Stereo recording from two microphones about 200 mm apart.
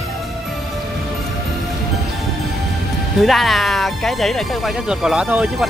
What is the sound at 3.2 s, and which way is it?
Speech, centre (ahead or behind).